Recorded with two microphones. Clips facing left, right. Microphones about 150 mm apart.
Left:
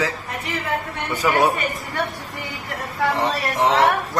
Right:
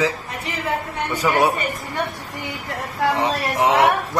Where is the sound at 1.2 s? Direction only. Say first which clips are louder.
Even; 10° right (ahead or behind).